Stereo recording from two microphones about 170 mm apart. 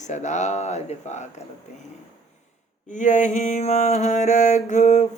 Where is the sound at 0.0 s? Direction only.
45° left (ahead or behind).